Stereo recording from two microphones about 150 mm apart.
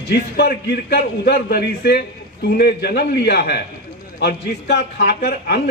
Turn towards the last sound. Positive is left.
turn(degrees=90)